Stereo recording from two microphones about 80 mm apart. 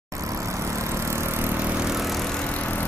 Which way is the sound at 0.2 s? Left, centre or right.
Right.